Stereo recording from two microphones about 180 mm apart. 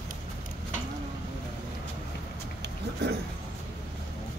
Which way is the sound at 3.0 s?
70° right (ahead or behind).